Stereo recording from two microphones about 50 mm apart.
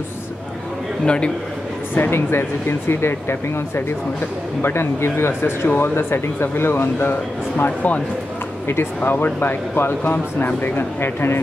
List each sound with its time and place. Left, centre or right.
1.0 s a man's voice: left
2.0 s speech: left
7.5 s speech: left
8.6 s speech: left